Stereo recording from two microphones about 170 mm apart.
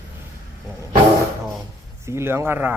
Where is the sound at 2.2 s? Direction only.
15° right (ahead or behind).